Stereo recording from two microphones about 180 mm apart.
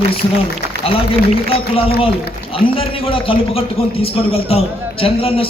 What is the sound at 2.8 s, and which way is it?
A man's voice, 30° left (ahead or behind).